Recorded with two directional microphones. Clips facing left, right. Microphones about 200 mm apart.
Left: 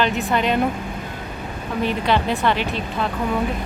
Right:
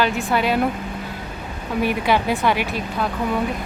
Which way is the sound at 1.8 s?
10° right (ahead or behind).